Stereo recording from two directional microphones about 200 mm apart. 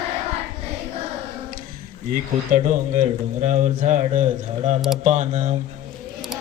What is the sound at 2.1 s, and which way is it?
A man's voice, 40° right (ahead or behind).